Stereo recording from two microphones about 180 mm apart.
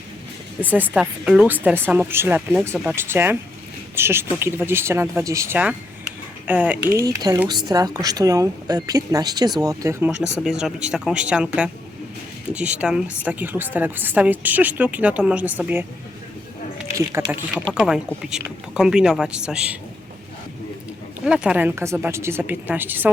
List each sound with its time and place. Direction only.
0.6 s a woman's voice: 10° right (ahead or behind)
17.2 s a woman's voice: 15° right (ahead or behind)
17.5 s speech: 5° right (ahead or behind)
21.2 s a woman's voice: 5° right (ahead or behind)